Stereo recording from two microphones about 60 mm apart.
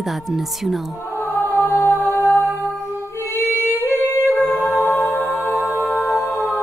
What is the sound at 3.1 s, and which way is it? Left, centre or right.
Female singing, left.